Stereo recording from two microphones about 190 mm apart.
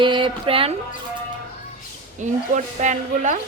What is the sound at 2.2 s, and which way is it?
Speech, 40° right (ahead or behind).